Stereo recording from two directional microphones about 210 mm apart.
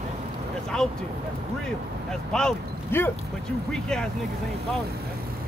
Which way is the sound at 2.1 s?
5° left (ahead or behind).